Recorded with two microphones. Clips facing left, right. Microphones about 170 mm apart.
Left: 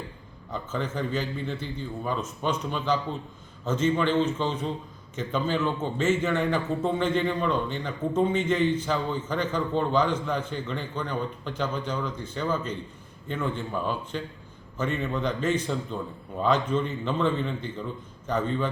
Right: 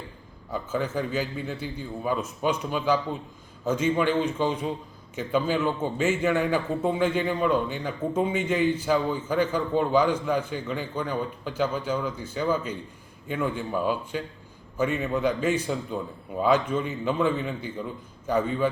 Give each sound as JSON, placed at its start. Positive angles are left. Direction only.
{"t": 0.5, "sound": "a man's voice", "side_deg": -10}